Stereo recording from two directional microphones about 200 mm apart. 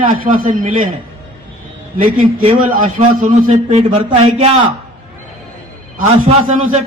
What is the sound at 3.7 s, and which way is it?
A man's voice, 30° right (ahead or behind).